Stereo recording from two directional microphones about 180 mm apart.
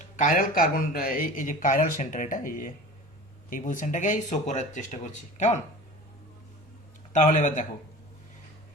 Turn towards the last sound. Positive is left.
turn(degrees=45)  # may be behind; listen again after turning